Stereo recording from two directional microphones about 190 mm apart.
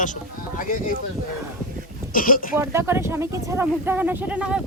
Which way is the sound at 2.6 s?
15° right (ahead or behind).